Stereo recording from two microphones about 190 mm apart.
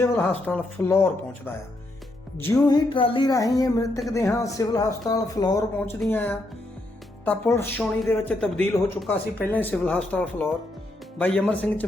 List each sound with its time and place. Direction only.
0.4 s speech: 10° left (ahead or behind)
2.4 s speech: 10° left (ahead or behind)
2.6 s music: 25° left (ahead or behind)
4.1 s speech: 15° left (ahead or behind)
5.8 s speech: 10° left (ahead or behind)